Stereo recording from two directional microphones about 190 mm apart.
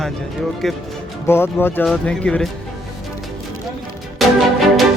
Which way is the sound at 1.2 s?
10° left (ahead or behind).